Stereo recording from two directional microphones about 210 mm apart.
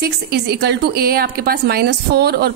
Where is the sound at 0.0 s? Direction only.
50° right (ahead or behind).